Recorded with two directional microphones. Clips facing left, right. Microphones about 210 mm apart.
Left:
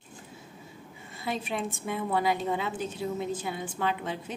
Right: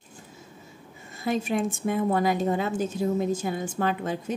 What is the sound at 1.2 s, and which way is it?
A woman's voice, 45° right (ahead or behind).